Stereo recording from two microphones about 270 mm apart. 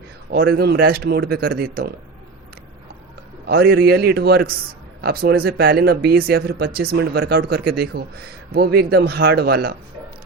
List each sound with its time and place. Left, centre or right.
0.3 s speech: right
3.4 s speech: right